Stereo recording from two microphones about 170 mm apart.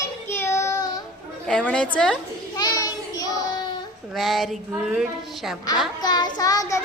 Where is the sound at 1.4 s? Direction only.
5° left (ahead or behind).